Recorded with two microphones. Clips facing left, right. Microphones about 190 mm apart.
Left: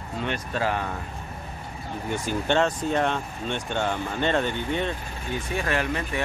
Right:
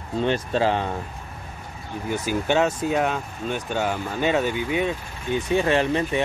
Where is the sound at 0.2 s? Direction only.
30° right (ahead or behind).